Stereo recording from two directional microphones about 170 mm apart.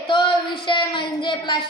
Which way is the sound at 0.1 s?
30° left (ahead or behind).